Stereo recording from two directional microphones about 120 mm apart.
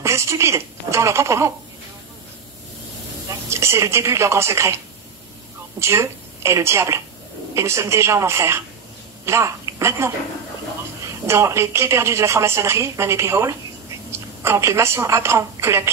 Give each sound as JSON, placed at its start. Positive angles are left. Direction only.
{"t": 0.0, "sound": "speech", "side_deg": -25}
{"t": 3.3, "sound": "speech", "side_deg": -25}
{"t": 5.8, "sound": "a woman's voice", "side_deg": -25}